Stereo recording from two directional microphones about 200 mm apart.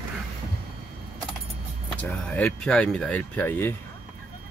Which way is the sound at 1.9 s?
5° left (ahead or behind).